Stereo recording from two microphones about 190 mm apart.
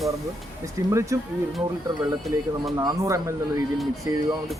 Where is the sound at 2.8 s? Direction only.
15° right (ahead or behind).